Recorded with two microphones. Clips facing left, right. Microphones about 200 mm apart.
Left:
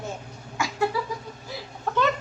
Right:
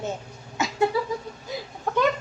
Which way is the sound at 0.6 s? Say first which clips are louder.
Right 2 dB; 20° right (ahead or behind).